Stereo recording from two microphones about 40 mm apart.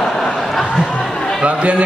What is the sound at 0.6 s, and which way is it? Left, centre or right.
Speech, centre.